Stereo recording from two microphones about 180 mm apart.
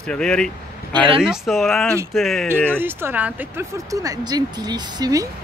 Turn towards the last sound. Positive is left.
turn(degrees=-20)  # may be behind; listen again after turning